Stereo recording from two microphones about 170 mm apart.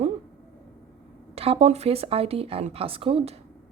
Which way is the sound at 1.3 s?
35° right (ahead or behind).